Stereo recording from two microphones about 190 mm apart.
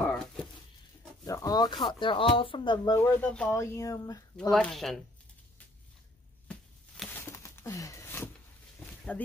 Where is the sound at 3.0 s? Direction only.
10° left (ahead or behind).